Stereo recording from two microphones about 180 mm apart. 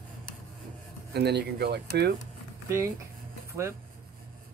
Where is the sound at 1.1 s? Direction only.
65° right (ahead or behind).